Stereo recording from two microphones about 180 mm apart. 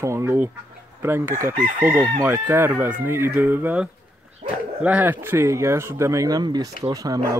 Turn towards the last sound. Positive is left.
turn(degrees=-20)  # may be behind; listen again after turning